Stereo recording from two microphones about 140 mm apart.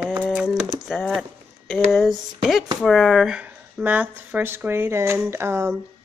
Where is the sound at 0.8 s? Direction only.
Centre (ahead or behind); by 5.8 s 15° right (ahead or behind).